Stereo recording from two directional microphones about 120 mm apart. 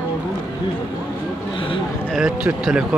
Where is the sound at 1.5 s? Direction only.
45° left (ahead or behind).